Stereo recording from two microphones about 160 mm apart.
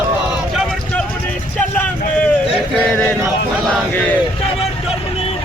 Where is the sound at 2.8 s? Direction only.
10° left (ahead or behind).